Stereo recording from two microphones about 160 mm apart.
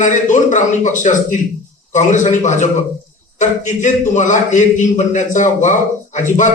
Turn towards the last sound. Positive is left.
turn(degrees=50)  # may be behind; listen again after turning